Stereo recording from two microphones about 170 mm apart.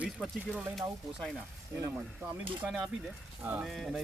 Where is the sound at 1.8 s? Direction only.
15° right (ahead or behind).